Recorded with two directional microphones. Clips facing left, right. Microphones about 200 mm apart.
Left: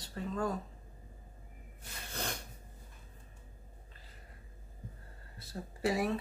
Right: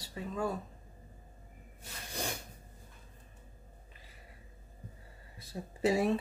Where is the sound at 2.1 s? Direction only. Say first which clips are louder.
Right 2 dB; 10° right (ahead or behind).